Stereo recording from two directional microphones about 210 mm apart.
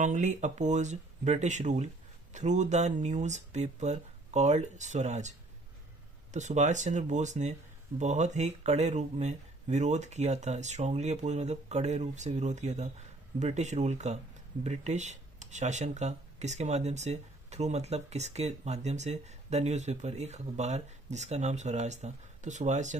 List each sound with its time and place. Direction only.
0.0 s speech: 35° right (ahead or behind)
6.3 s speech: 35° right (ahead or behind)